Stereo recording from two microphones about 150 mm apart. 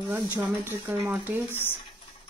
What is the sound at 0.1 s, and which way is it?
Speech, 15° right (ahead or behind).